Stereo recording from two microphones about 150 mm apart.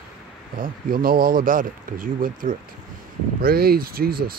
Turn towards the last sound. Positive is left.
turn(degrees=-85)